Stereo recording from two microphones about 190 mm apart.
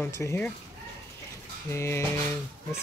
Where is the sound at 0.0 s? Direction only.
10° left (ahead or behind).